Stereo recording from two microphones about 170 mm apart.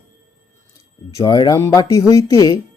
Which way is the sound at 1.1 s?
20° left (ahead or behind).